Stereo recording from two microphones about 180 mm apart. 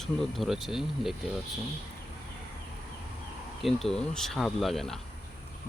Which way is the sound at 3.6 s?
Centre (ahead or behind).